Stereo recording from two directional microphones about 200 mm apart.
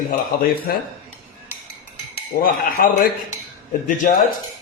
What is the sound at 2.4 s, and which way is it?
Speech, 45° left (ahead or behind).